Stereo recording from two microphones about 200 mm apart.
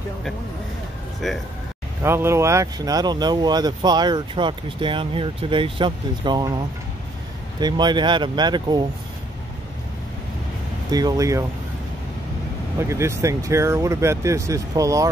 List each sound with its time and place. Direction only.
1.2 s speech: centre (ahead or behind)
2.0 s speech: 10° right (ahead or behind)
7.6 s speech: 20° right (ahead or behind)
10.9 s speech: 20° right (ahead or behind)
12.7 s speech: 15° right (ahead or behind)